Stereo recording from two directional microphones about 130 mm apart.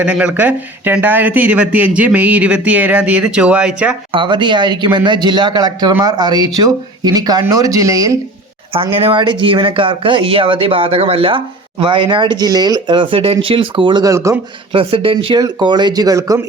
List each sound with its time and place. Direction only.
0.0 s speech: 10° right (ahead or behind)
4.1 s speech: 40° right (ahead or behind)
8.7 s speech: 45° right (ahead or behind)
14.0 s speech: 25° right (ahead or behind)
14.7 s speech: 45° right (ahead or behind)
15.4 s speech: 30° right (ahead or behind)